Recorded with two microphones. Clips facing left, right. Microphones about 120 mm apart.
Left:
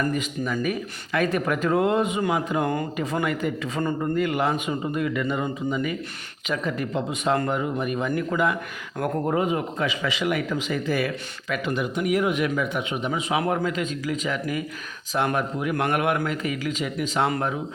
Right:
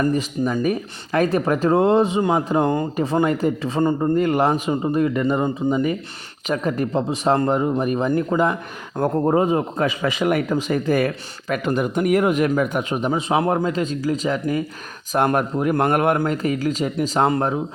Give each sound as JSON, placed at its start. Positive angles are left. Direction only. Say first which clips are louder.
{"t": 0.0, "sound": "speech", "louder": "right 6 dB", "side_deg": -35}
{"t": 15.1, "sound": "speech", "louder": "right 5 dB", "side_deg": -45}